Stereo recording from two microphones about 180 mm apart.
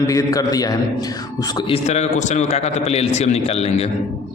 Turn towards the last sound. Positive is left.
turn(degrees=35)  # may be behind; listen again after turning